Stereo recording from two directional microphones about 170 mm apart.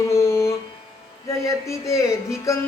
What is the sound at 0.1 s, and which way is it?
Music, 15° left (ahead or behind).